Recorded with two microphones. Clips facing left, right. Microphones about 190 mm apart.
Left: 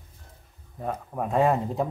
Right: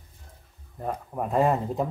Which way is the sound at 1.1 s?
Centre (ahead or behind).